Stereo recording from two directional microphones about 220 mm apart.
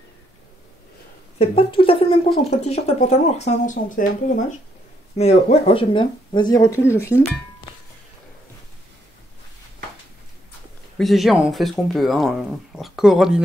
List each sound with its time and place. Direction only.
1.4 s speech: 25° left (ahead or behind)
5.1 s speech: 30° left (ahead or behind); by 7.2 s 10° left (ahead or behind)
11.0 s speech: centre (ahead or behind)